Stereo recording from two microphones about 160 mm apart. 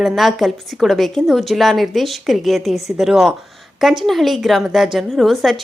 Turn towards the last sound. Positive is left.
turn(degrees=0)  # may be behind; listen again after turning